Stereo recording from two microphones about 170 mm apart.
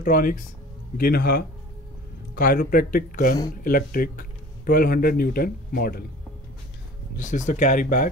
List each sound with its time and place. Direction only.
0.0 s speech: 55° left (ahead or behind)
7.2 s speech: 45° left (ahead or behind)